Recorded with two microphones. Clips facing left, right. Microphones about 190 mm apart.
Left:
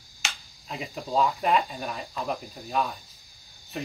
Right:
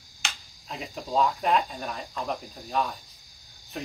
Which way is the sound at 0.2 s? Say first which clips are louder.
Even; centre (ahead or behind).